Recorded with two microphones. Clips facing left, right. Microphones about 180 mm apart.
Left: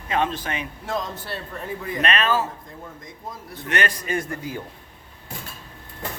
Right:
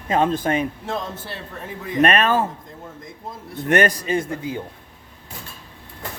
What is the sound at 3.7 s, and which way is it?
Speech, 50° right (ahead or behind).